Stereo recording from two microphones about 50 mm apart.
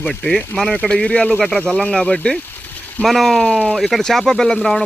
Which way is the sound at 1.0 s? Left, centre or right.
Left.